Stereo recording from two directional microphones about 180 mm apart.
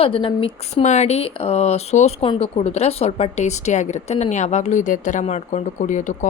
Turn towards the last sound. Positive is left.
turn(degrees=45)  # may be behind; listen again after turning